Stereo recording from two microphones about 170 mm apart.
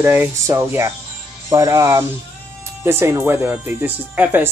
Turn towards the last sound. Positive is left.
turn(degrees=-10)  # may be behind; listen again after turning